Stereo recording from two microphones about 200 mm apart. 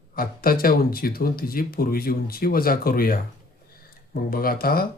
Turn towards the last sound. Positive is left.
turn(degrees=50)  # may be behind; listen again after turning